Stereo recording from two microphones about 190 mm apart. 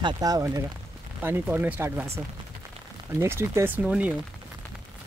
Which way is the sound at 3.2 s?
15° right (ahead or behind).